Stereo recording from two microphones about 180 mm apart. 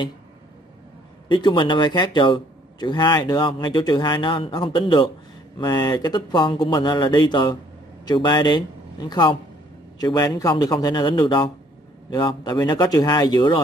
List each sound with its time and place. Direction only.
1.3 s a man's voice: 25° left (ahead or behind)